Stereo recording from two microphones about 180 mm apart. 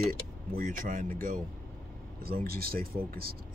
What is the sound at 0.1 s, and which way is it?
Speech, 50° right (ahead or behind).